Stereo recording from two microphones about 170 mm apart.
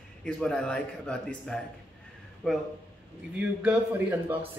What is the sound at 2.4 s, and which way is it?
Speech, 5° left (ahead or behind).